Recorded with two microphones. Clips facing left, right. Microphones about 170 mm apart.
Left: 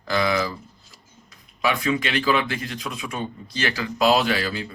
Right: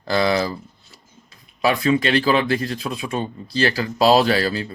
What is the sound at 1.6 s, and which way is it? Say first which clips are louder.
Speech: right 5 dB; 35° right (ahead or behind).